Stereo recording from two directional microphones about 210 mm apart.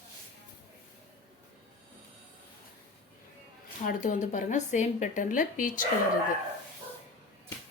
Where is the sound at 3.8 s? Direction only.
40° left (ahead or behind).